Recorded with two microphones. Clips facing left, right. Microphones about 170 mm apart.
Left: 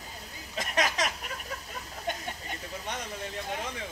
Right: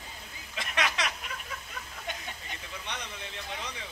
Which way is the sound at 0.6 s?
40° left (ahead or behind).